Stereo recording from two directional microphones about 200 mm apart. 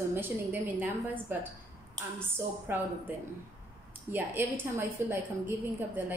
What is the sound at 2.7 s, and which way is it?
A woman's voice, 10° right (ahead or behind).